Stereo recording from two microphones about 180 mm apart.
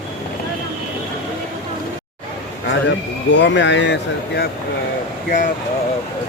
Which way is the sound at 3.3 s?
80° left.